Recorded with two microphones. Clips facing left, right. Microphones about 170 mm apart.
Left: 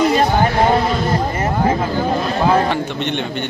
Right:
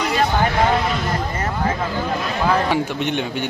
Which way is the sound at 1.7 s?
35° left (ahead or behind).